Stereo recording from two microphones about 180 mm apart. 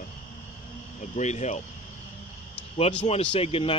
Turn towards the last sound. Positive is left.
turn(degrees=30)  # may be behind; listen again after turning